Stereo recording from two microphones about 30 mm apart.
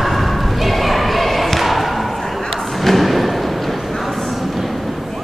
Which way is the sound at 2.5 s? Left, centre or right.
Centre.